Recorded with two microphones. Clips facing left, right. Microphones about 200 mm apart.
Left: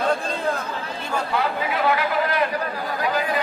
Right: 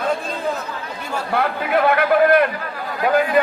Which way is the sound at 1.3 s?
55° right (ahead or behind).